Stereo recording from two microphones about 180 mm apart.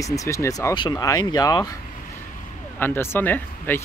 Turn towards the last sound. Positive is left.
turn(degrees=10)  # may be behind; listen again after turning